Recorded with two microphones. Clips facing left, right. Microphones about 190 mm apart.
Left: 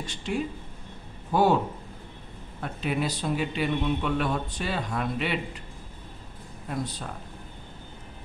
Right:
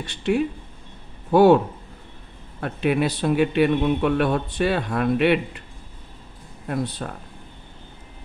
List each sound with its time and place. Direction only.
0.0 s speech: 65° right (ahead or behind)
2.6 s speech: 65° right (ahead or behind)
6.7 s speech: 60° right (ahead or behind)